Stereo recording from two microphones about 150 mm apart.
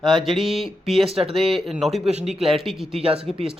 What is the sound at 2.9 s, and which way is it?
Speech, 40° right (ahead or behind).